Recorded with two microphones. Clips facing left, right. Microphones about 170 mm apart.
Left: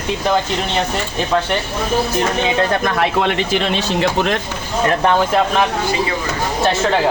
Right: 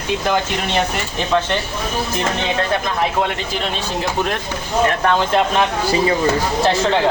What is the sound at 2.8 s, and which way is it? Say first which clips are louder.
A man's voice: left 3 dB; 90° left.